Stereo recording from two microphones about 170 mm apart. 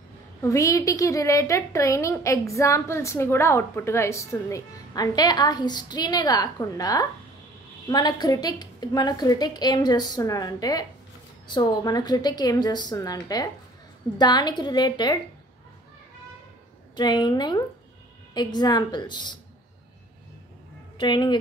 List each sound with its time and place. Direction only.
0.4 s a woman's voice: 20° left (ahead or behind)
16.9 s a woman's voice: 25° left (ahead or behind)
21.0 s a woman's voice: 25° left (ahead or behind)